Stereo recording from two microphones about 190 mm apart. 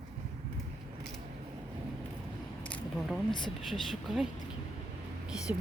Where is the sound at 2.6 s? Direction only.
5° left (ahead or behind).